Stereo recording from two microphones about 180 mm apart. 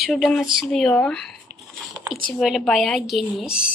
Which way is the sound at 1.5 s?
30° left (ahead or behind).